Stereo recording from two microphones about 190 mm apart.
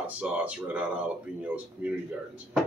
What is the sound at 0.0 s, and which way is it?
Speech, 5° right (ahead or behind).